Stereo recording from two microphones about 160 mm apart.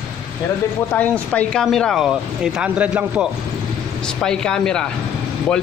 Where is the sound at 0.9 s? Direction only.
10° left (ahead or behind).